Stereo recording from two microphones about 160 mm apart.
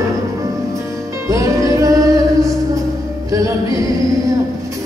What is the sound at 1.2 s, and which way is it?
Music, 20° right (ahead or behind).